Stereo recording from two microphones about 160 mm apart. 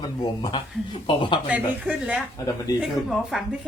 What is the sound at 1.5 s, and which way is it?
Speech, 5° right (ahead or behind).